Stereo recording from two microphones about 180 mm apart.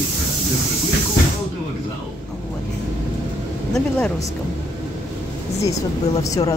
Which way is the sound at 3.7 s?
5° left (ahead or behind).